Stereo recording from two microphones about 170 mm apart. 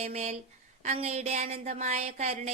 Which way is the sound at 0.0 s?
40° right (ahead or behind).